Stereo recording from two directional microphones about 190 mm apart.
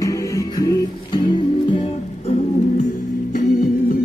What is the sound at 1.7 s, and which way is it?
Music, 35° left (ahead or behind).